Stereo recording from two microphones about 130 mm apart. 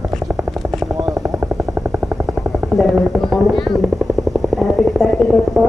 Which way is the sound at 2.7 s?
5° right (ahead or behind).